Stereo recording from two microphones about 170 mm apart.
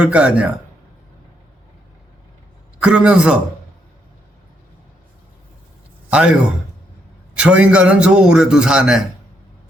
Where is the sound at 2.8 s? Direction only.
5° right (ahead or behind).